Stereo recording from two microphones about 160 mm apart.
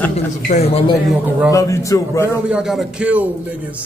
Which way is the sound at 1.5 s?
20° left (ahead or behind).